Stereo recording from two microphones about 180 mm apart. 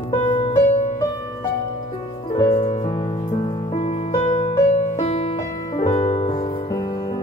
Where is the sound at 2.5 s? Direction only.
40° left (ahead or behind).